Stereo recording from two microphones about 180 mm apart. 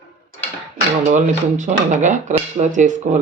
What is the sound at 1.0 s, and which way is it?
Speech, 45° right (ahead or behind).